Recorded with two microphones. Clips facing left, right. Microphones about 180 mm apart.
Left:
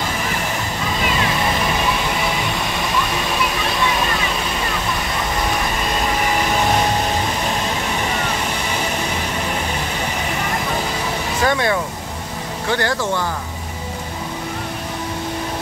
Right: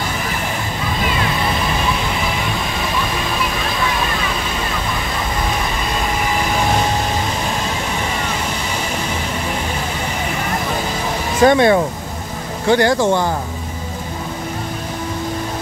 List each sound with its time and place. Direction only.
11.4 s speech: 25° right (ahead or behind)